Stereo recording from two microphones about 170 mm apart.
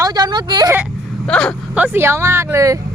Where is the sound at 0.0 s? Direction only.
25° right (ahead or behind).